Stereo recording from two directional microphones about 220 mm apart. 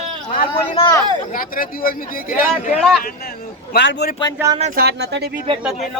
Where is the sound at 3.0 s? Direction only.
45° left (ahead or behind).